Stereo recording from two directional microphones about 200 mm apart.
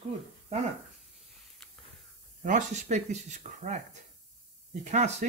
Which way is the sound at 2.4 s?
40° right (ahead or behind).